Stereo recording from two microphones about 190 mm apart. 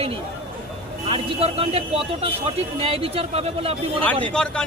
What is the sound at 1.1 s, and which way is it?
Speech, 30° right (ahead or behind).